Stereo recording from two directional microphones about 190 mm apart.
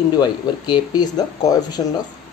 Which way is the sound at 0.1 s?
20° left (ahead or behind).